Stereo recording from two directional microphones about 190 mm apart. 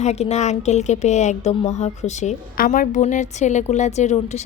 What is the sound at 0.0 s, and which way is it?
A woman's voice, 35° left (ahead or behind).